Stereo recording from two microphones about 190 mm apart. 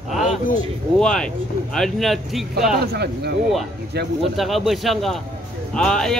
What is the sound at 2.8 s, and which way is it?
Speech, 55° right (ahead or behind).